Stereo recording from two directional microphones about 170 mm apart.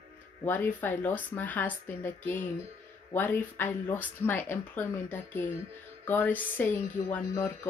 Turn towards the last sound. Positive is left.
turn(degrees=20)  # may be behind; listen again after turning